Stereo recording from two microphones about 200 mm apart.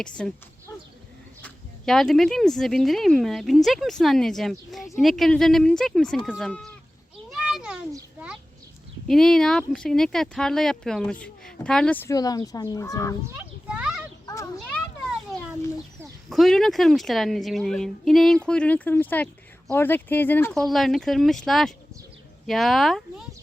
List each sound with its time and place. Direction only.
0.2 s speech: 5° left (ahead or behind)
1.4 s speech: 5° left (ahead or behind)
7.3 s children playing: centre (ahead or behind)
9.0 s speech: centre (ahead or behind)
12.0 s speech: 20° left (ahead or behind)
13.2 s children playing: 5° right (ahead or behind)
14.3 s a sound: 15° left (ahead or behind)
16.3 s speech: centre (ahead or behind)